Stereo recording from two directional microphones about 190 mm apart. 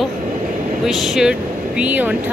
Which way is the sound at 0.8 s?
Centre (ahead or behind).